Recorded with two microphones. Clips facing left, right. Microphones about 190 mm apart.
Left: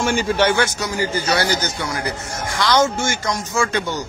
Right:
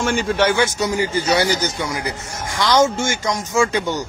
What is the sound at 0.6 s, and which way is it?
Speech, 20° right (ahead or behind).